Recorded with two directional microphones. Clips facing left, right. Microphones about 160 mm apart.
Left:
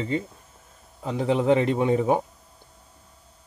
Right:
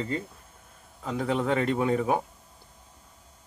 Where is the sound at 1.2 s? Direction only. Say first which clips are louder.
Left 5 dB; 25° left (ahead or behind).